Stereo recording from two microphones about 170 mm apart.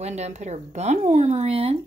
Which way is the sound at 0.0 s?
40° right (ahead or behind).